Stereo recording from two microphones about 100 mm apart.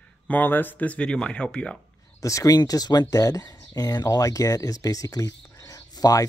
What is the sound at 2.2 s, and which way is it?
Speech, 35° left (ahead or behind).